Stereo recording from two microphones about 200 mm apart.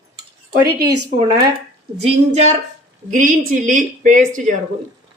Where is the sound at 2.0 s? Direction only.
35° right (ahead or behind).